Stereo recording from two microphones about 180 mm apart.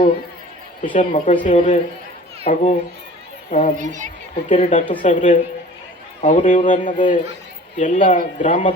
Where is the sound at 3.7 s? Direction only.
45° right (ahead or behind).